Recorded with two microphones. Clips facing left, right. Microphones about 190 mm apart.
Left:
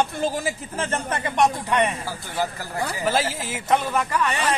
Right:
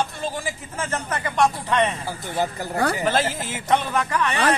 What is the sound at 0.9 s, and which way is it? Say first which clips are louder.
Speech: even; 25° left (ahead or behind).